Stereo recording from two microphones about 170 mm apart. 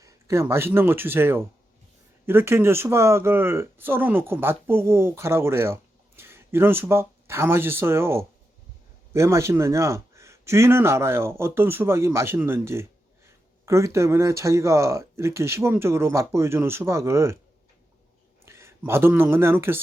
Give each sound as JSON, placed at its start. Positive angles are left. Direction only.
{"t": 0.0, "sound": "a man's voice", "side_deg": -15}
{"t": 18.4, "sound": "speech", "side_deg": -15}